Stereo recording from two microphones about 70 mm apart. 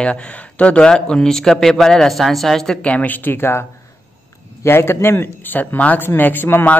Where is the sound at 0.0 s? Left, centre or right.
Centre.